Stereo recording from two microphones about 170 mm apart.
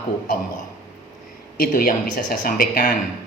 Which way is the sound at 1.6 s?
60° left (ahead or behind).